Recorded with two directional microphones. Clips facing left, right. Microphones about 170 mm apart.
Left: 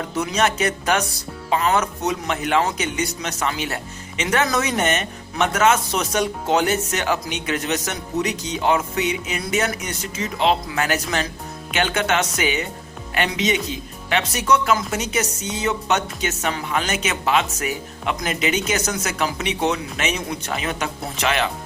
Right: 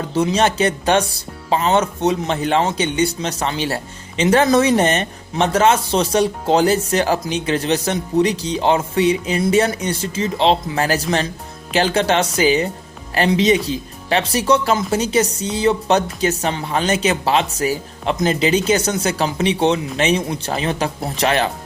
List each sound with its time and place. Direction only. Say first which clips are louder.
0.1 s speech: right 5 dB; 30° right (ahead or behind)